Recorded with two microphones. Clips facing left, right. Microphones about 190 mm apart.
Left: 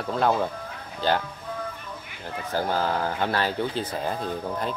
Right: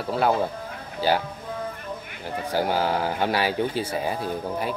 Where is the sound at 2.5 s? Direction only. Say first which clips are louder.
Right 2 dB; 10° right (ahead or behind).